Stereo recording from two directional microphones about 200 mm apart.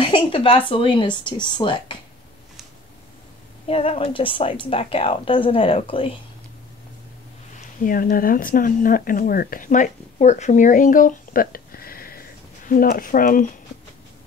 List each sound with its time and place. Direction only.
0.0 s a woman's voice: 25° left (ahead or behind)
3.6 s a woman's voice: 30° left (ahead or behind)
7.8 s speech: 45° left (ahead or behind)